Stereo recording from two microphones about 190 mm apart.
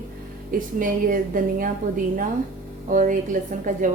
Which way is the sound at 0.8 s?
45° right (ahead or behind).